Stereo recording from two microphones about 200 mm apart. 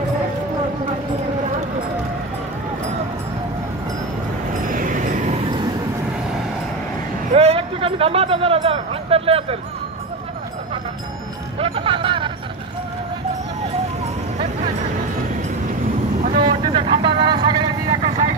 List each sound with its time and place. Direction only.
4.6 s vehicle: 40° right (ahead or behind); by 5.7 s 25° right (ahead or behind)
7.3 s a sound: 30° right (ahead or behind)
11.5 s music: 30° right (ahead or behind)
16.4 s vehicle: 25° right (ahead or behind)